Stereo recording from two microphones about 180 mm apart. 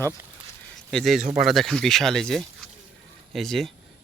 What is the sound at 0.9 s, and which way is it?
Speech, centre (ahead or behind).